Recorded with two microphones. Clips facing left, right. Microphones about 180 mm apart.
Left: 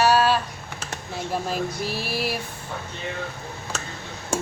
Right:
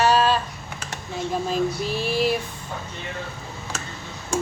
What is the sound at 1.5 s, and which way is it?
Dishes, 10° left (ahead or behind).